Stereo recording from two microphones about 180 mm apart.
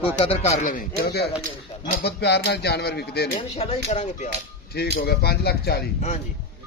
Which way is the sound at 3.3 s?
35° left (ahead or behind).